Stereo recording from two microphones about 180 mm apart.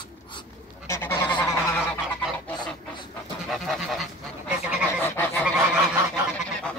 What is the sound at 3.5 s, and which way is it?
Goat, centre (ahead or behind).